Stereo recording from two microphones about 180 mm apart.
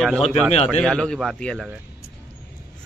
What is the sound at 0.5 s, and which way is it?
Speech, 35° left (ahead or behind).